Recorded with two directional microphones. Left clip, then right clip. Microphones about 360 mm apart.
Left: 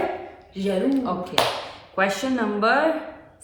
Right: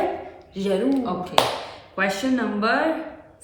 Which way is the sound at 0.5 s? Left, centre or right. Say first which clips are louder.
Right 2 dB; centre.